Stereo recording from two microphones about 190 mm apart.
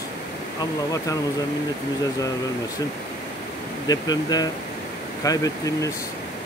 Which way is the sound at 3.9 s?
20° left (ahead or behind).